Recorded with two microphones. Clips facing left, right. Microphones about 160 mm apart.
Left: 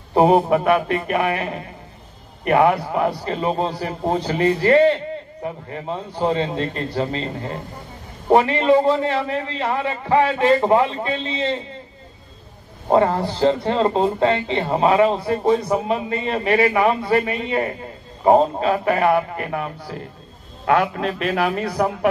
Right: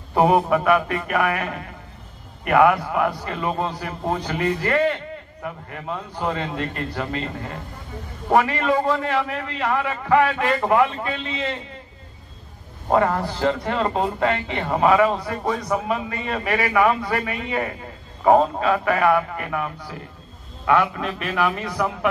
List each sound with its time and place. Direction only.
0.1 s a man's voice: 30° left (ahead or behind)
12.9 s a man's voice: 30° left (ahead or behind)